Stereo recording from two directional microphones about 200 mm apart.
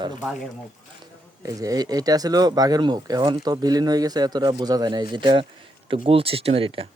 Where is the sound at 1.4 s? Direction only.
15° right (ahead or behind).